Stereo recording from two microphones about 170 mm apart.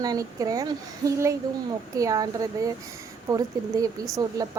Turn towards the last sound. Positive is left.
turn(degrees=-20)  # may be behind; listen again after turning